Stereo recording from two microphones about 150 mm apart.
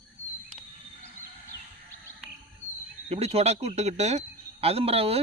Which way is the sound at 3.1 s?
45° right (ahead or behind).